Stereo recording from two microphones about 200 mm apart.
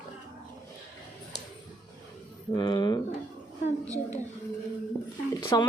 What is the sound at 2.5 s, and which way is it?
Speech, 20° left (ahead or behind).